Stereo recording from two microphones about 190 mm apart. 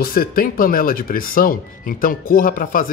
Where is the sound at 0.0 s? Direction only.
50° left (ahead or behind).